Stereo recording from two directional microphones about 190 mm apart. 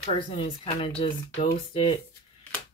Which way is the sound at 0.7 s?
30° left (ahead or behind).